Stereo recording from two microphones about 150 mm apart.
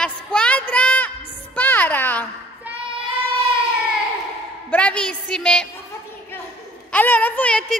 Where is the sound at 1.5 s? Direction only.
10° left (ahead or behind).